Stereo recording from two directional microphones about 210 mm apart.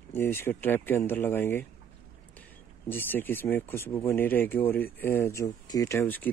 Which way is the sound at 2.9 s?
10° left (ahead or behind).